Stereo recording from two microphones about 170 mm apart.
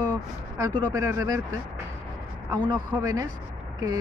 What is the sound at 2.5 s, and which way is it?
Speech, 25° right (ahead or behind).